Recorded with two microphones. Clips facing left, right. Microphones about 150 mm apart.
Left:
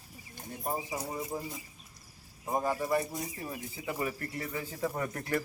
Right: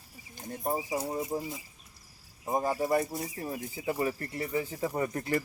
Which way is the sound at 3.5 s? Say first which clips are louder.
Right 4 dB; 30° right (ahead or behind).